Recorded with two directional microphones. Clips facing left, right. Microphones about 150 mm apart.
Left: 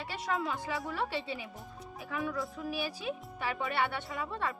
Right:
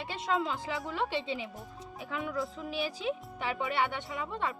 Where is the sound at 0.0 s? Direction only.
25° right (ahead or behind).